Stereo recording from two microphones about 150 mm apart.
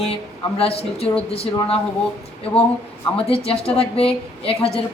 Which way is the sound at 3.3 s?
40° left (ahead or behind).